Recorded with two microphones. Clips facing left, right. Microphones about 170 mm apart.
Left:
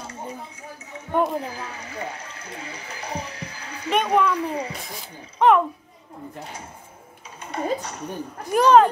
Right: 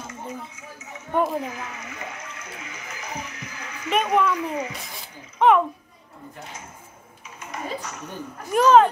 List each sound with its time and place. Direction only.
0.0 s a sound: 30° left (ahead or behind)
1.1 s speech: centre (ahead or behind)
1.4 s a child's voice: 35° left (ahead or behind)
5.4 s speech: centre (ahead or behind)
7.3 s a child's voice: 35° left (ahead or behind)
8.5 s speech: centre (ahead or behind)